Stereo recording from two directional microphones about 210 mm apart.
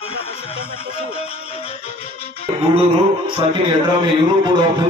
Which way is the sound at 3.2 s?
20° right (ahead or behind).